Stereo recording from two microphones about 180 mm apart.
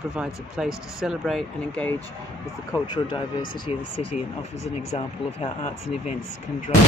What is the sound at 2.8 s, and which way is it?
Speech, 25° left (ahead or behind).